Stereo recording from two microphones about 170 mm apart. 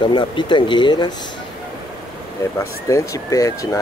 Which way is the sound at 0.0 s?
25° left (ahead or behind).